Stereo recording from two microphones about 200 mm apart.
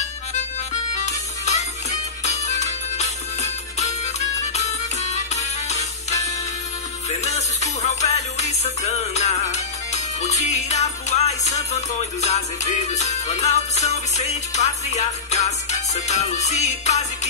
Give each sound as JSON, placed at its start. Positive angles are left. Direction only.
{"t": 0.9, "sound": "music", "side_deg": 35}